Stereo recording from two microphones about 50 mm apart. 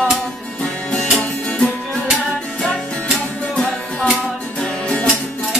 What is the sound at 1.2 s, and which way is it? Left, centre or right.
Music, centre.